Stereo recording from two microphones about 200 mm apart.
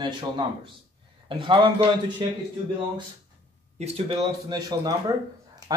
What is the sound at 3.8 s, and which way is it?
Speech, 25° right (ahead or behind).